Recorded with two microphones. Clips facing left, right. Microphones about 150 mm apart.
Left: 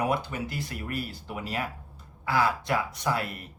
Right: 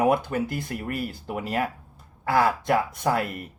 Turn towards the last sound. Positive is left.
turn(degrees=-50)  # may be behind; listen again after turning